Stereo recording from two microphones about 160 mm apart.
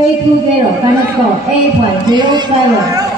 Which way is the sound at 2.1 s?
30° right (ahead or behind).